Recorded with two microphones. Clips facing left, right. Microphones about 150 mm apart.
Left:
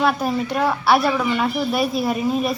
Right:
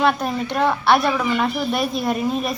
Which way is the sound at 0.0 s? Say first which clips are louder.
Even; 5° left (ahead or behind).